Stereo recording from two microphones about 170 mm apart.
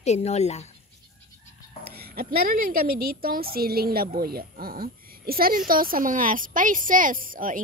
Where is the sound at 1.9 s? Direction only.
65° right (ahead or behind).